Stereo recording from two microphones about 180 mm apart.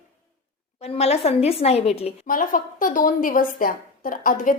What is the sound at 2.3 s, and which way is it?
A woman's voice, 50° left (ahead or behind).